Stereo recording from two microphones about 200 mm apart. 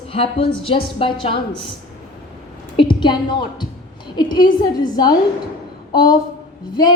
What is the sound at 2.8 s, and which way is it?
Speech, 25° left (ahead or behind).